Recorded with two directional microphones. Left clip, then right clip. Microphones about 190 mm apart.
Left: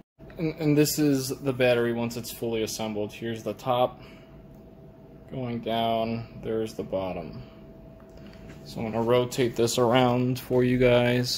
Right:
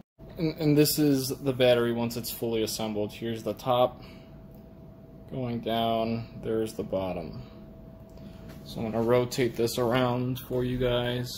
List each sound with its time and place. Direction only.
0.4 s speech: centre (ahead or behind)
5.3 s speech: centre (ahead or behind)
8.9 s speech: centre (ahead or behind)
9.5 s speech: 25° left (ahead or behind)
10.5 s speech: 30° left (ahead or behind)